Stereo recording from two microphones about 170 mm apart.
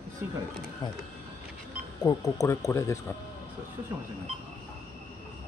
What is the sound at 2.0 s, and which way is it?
Speech, 20° left (ahead or behind).